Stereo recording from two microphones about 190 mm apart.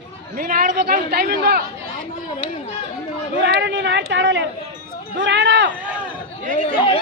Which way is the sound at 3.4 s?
70° right (ahead or behind).